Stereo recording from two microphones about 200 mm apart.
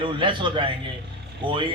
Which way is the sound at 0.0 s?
25° right (ahead or behind).